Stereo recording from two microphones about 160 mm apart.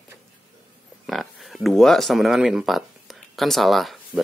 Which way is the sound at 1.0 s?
Centre (ahead or behind).